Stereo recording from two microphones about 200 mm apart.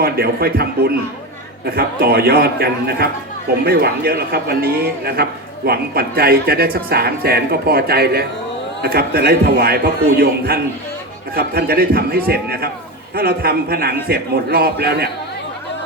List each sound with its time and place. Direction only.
0.0 s a man's voice: 50° right (ahead or behind)